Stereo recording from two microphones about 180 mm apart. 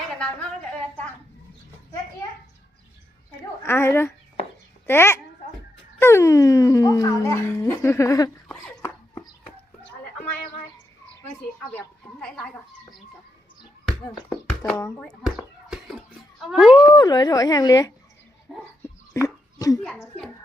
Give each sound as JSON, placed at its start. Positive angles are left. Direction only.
{"t": 3.6, "sound": "speech", "side_deg": 15}
{"t": 8.4, "sound": "dog", "side_deg": 5}
{"t": 14.7, "sound": "speech", "side_deg": 10}
{"t": 15.0, "sound": "bouncing", "side_deg": -5}
{"t": 16.4, "sound": "speech", "side_deg": 0}
{"t": 16.9, "sound": "speech", "side_deg": 25}
{"t": 18.5, "sound": "speech", "side_deg": 0}
{"t": 19.1, "sound": "speech", "side_deg": 15}